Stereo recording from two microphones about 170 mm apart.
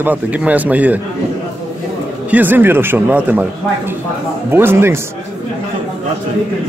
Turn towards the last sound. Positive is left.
turn(degrees=-15)  # may be behind; listen again after turning